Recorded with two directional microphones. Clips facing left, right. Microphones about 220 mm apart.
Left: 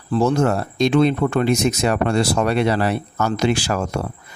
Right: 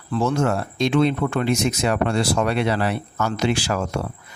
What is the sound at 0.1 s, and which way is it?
Speech, 40° left (ahead or behind).